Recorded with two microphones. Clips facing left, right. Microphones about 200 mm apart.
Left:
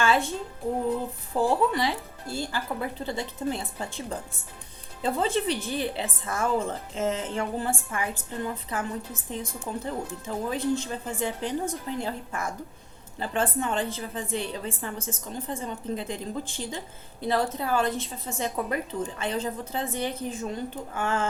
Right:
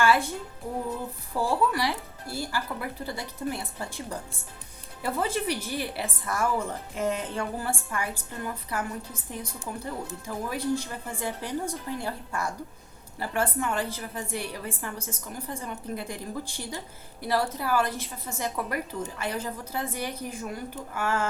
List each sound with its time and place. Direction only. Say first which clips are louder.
0.0 s music: right 1 dB; 20° left (ahead or behind)
1.3 s a woman's voice: left 2 dB; 20° left (ahead or behind)